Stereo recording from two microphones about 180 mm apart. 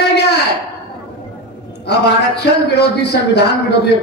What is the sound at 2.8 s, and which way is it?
Speech, 65° left (ahead or behind).